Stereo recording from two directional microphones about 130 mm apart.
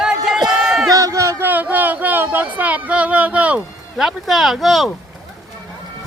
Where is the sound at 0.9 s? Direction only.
25° right (ahead or behind); by 4.9 s centre (ahead or behind).